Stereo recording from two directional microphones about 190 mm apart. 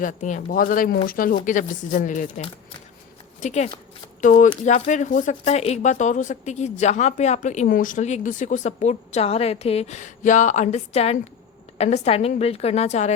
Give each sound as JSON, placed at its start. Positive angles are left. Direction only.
{"t": 0.0, "sound": "speech", "side_deg": 40}